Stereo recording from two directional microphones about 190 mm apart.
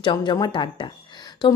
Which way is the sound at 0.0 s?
25° left (ahead or behind).